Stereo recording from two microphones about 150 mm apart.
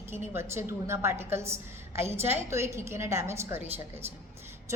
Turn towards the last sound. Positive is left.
turn(degrees=-20)  # may be behind; listen again after turning